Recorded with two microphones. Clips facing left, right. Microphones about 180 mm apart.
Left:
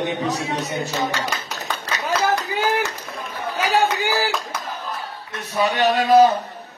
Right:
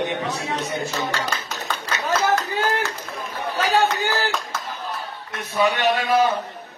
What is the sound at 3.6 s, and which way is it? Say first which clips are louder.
Chatter: even; 15° left (ahead or behind).